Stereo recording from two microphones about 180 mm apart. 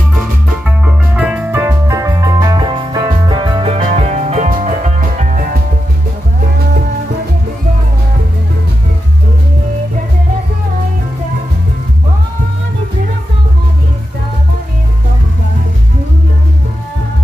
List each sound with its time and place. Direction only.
0.7 s music: 5° right (ahead or behind); by 5.6 s 45° right (ahead or behind)